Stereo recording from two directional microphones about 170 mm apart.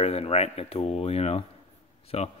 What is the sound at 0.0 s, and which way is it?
Speech, 35° left (ahead or behind).